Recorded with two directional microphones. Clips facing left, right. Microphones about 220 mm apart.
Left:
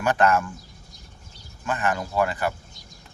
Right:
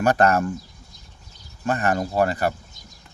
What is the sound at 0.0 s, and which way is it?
Speech, 40° right (ahead or behind).